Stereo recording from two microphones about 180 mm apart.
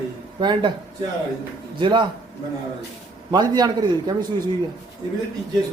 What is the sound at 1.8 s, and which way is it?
Speech, 25° right (ahead or behind).